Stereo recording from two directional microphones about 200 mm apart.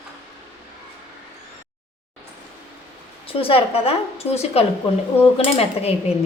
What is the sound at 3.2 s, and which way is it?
A woman's voice, 25° left (ahead or behind).